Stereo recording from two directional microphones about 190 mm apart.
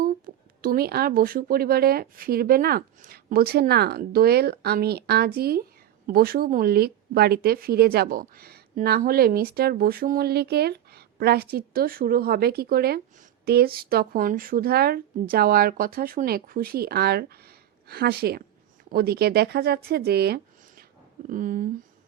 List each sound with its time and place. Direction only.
0.3 s a sound: 50° right (ahead or behind)
0.6 s speech: 50° right (ahead or behind)
21.2 s speech: 45° right (ahead or behind)